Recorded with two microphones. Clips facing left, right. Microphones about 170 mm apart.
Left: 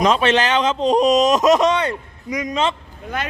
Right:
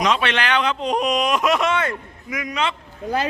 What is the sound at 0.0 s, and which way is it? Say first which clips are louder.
Speech: left 5 dB; 35° left (ahead or behind).